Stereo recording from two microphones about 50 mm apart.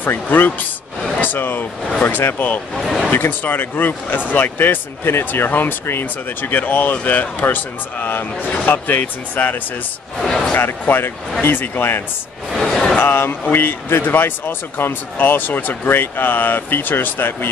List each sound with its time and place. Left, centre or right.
0.0 s speech: left
2.7 s speech: centre
3.1 s speech: left
10.1 s speech: centre
10.6 s speech: left
12.5 s a sound: centre
13.0 s speech: left